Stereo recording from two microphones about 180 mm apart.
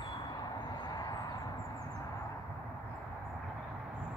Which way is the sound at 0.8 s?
20° left (ahead or behind).